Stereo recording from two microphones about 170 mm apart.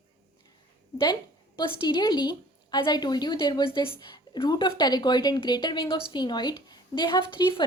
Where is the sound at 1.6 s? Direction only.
25° left (ahead or behind).